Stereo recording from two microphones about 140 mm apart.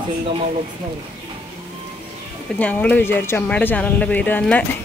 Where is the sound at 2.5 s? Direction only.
10° left (ahead or behind).